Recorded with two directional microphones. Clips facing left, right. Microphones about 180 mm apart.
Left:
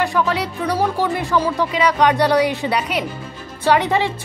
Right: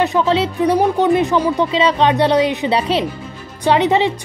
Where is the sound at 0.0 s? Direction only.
25° right (ahead or behind).